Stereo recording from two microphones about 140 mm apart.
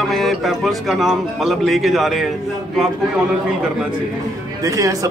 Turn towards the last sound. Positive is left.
turn(degrees=-25)  # may be behind; listen again after turning